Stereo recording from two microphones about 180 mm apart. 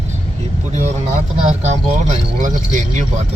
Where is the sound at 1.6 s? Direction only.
40° right (ahead or behind).